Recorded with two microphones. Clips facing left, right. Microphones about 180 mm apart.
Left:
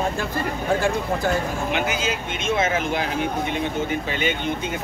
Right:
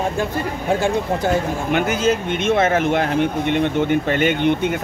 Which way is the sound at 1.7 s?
55° right (ahead or behind).